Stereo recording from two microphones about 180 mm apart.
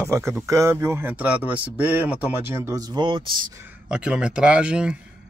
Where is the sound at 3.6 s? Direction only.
10° right (ahead or behind).